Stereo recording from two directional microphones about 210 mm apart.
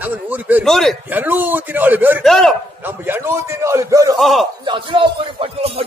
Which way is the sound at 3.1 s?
10° right (ahead or behind).